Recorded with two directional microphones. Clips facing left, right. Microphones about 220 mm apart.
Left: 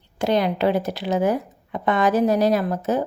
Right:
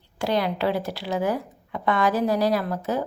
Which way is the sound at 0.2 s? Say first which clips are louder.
Left 4 dB; 20° left (ahead or behind).